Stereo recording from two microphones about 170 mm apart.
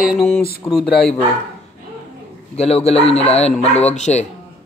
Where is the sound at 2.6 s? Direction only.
35° left (ahead or behind).